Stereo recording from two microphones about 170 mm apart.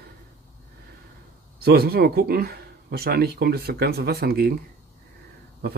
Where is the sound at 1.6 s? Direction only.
65° right (ahead or behind).